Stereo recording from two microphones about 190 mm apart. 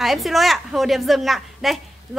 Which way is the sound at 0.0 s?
Centre (ahead or behind).